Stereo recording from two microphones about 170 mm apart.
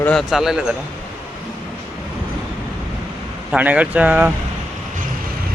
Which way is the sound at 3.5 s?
10° right (ahead or behind).